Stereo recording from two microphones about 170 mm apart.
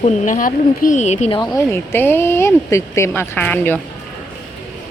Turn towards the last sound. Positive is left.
turn(degrees=10)  # may be behind; listen again after turning